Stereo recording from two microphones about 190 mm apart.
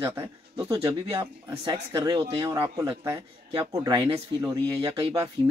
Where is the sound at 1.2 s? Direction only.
30° right (ahead or behind).